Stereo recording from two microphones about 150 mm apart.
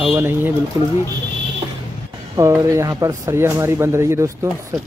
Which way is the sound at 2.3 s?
20° right (ahead or behind).